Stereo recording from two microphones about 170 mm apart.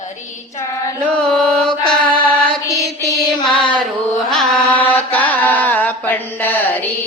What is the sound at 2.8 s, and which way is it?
Mantra, 20° right (ahead or behind).